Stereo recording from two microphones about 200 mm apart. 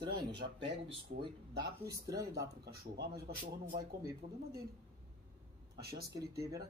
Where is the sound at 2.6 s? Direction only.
55° right (ahead or behind).